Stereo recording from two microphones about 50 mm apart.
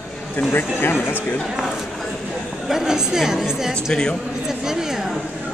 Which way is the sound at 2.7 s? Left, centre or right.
Centre.